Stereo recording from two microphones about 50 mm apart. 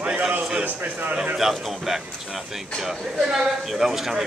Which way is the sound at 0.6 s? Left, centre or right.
Right.